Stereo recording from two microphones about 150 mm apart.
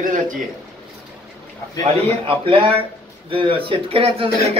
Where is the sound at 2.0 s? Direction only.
40° right (ahead or behind).